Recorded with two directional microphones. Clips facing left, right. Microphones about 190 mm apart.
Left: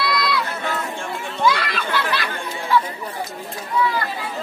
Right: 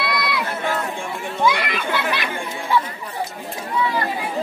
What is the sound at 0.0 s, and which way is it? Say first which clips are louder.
Run: left 1 dB; 20° right (ahead or behind).